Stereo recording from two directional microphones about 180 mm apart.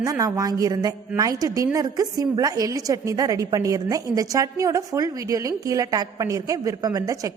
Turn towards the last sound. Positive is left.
turn(degrees=-20)  # may be behind; listen again after turning